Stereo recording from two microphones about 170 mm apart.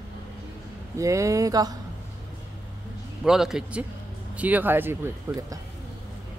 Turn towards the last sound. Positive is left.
turn(degrees=-15)  # may be behind; listen again after turning